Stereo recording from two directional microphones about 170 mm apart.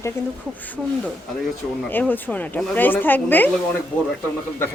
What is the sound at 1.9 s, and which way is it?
Speech, 10° left (ahead or behind).